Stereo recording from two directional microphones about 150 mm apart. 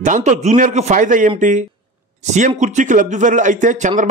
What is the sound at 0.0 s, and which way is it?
A man's voice, 55° right (ahead or behind).